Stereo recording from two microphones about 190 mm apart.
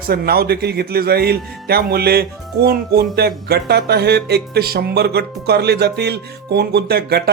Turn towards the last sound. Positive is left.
turn(degrees=-60)  # may be behind; listen again after turning